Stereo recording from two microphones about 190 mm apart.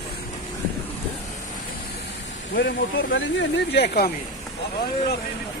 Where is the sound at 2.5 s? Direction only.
75° left (ahead or behind); by 4.1 s 55° left (ahead or behind).